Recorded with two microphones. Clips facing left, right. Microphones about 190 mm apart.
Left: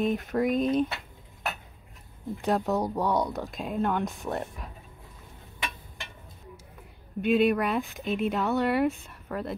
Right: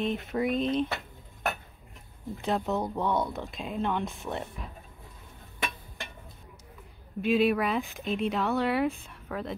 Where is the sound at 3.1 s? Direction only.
15° left (ahead or behind).